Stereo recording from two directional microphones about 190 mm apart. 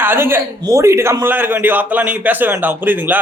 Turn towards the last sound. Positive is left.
turn(degrees=-10)  # may be behind; listen again after turning